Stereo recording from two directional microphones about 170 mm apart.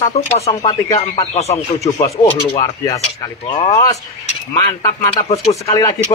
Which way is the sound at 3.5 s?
35° left (ahead or behind).